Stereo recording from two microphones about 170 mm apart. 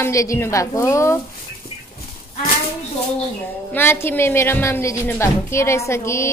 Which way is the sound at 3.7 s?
15° left (ahead or behind).